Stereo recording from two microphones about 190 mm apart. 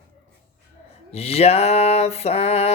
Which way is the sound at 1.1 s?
30° left (ahead or behind).